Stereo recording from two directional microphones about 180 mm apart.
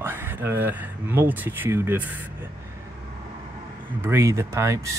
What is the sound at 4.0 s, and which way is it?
Speech, 15° right (ahead or behind).